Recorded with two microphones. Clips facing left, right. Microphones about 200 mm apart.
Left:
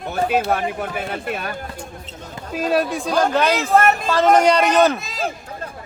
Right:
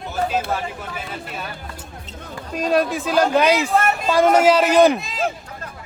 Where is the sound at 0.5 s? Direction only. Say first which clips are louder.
Left 5 dB; 60° left (ahead or behind).